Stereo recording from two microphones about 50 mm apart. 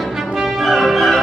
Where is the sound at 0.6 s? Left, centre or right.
Centre.